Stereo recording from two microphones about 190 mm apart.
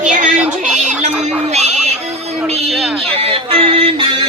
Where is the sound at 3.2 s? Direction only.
30° right (ahead or behind).